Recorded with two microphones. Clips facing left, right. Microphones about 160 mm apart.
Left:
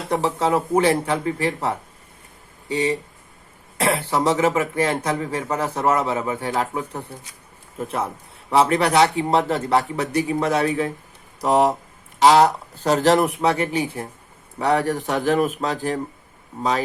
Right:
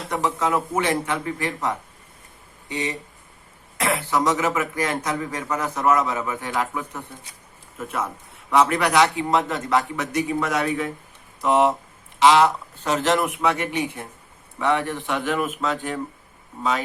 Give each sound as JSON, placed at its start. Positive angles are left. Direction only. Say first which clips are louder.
{"t": 0.1, "sound": "a man's voice", "louder": "left 3 dB", "side_deg": 30}